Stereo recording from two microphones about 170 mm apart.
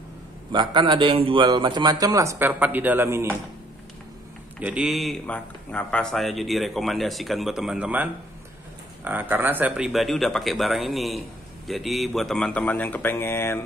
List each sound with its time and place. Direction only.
0.5 s a man's voice: 25° right (ahead or behind)
4.6 s speech: 5° right (ahead or behind); by 13.6 s 15° left (ahead or behind)